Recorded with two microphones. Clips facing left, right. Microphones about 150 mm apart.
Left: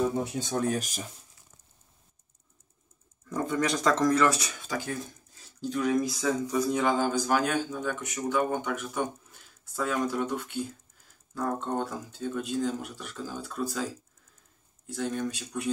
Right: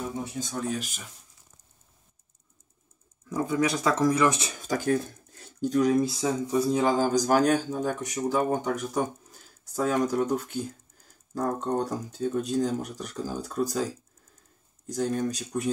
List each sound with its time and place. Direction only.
0.2 s speech: 65° left (ahead or behind)
3.3 s speech: 10° right (ahead or behind)
4.6 s speech: 45° right (ahead or behind)